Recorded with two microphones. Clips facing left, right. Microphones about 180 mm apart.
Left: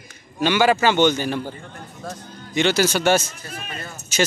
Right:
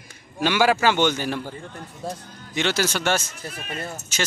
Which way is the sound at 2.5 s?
Centre (ahead or behind).